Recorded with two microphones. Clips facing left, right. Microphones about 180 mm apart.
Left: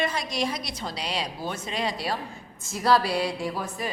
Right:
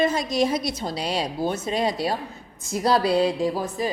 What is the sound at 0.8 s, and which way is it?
Speech, 45° right (ahead or behind).